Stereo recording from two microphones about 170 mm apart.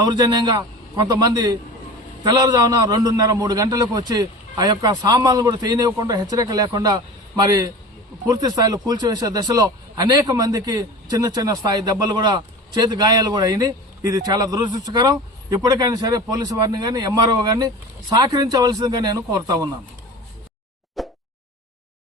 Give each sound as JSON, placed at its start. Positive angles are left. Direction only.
{"t": 0.0, "sound": "a man's voice", "side_deg": -25}
{"t": 21.0, "sound": "plop", "side_deg": 0}